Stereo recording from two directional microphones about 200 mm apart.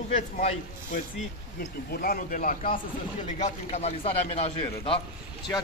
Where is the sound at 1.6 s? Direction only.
50° left (ahead or behind); by 5.0 s 25° left (ahead or behind).